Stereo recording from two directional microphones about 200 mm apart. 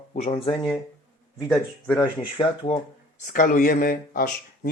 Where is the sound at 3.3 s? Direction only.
45° left (ahead or behind).